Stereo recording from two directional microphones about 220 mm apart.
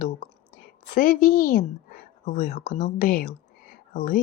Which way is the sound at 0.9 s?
40° left (ahead or behind).